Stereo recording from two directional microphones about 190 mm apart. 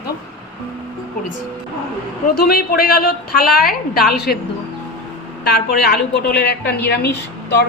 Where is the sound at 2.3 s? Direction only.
55° left (ahead or behind).